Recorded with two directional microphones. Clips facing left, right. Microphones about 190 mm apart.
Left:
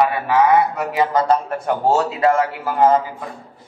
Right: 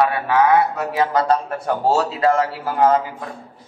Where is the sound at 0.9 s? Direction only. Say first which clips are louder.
Left 1 dB; 15° left (ahead or behind).